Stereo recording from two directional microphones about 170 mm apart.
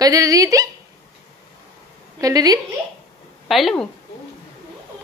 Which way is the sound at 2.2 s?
20° right (ahead or behind).